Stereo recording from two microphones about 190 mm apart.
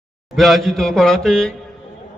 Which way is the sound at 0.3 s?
Centre (ahead or behind).